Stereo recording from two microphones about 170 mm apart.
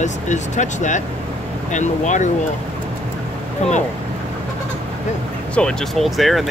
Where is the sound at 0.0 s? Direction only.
45° left (ahead or behind).